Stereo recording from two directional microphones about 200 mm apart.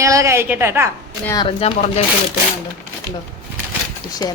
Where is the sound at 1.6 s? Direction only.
30° left (ahead or behind).